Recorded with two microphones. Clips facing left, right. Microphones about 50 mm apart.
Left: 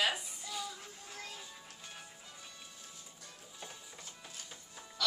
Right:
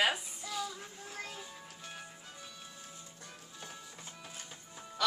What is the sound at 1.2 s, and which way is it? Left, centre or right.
Music, right.